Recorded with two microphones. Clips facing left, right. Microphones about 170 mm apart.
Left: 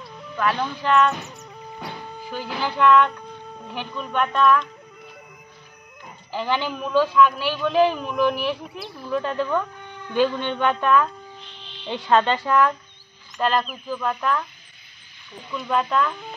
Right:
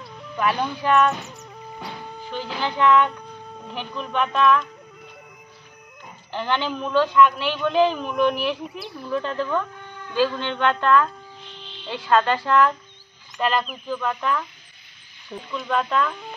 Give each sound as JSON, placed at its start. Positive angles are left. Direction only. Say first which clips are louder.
{"t": 0.4, "sound": "speech", "louder": "right 1 dB", "side_deg": -10}
{"t": 6.3, "sound": "a man's voice", "louder": "even", "side_deg": 5}
{"t": 10.1, "sound": "speech", "louder": "left 1 dB", "side_deg": 20}
{"t": 13.4, "sound": "a man's voice", "louder": "left 1 dB", "side_deg": 0}
{"t": 15.5, "sound": "a man's voice", "louder": "left 1 dB", "side_deg": 0}